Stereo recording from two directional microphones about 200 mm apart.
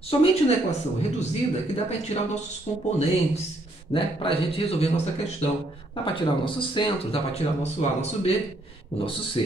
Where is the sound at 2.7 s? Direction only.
35° left (ahead or behind).